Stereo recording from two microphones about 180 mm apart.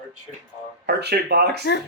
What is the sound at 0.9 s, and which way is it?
Speech, 65° right (ahead or behind).